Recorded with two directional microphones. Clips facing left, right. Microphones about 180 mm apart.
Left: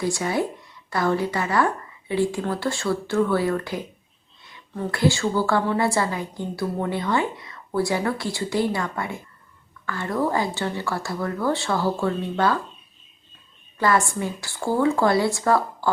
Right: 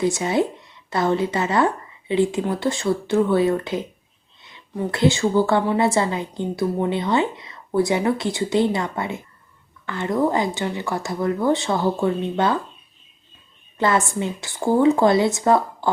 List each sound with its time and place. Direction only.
0.0 s a woman's voice: 20° right (ahead or behind)
13.7 s a woman's voice: 20° right (ahead or behind)